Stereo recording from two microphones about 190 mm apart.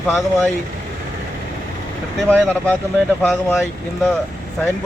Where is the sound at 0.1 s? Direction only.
10° left (ahead or behind).